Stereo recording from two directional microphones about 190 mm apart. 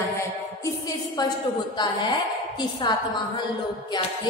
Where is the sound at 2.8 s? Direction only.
25° left (ahead or behind).